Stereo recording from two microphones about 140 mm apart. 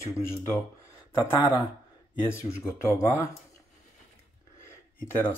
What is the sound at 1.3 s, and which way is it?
Speech, 40° left (ahead or behind).